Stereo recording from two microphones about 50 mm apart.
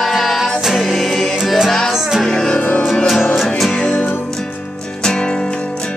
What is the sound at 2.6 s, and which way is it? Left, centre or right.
Music, left.